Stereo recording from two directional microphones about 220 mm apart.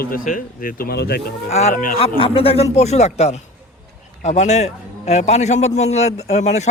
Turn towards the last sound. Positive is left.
turn(degrees=30)  # may be behind; listen again after turning